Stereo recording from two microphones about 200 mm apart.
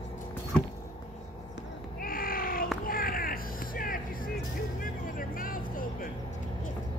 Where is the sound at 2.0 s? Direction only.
45° left (ahead or behind).